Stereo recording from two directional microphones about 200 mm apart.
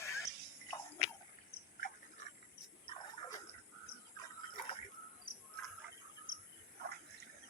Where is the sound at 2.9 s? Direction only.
25° left (ahead or behind).